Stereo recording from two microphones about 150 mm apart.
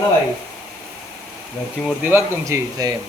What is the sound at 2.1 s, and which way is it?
Speech, 15° right (ahead or behind).